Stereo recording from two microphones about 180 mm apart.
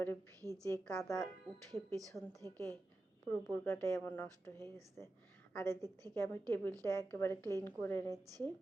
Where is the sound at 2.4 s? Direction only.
15° left (ahead or behind).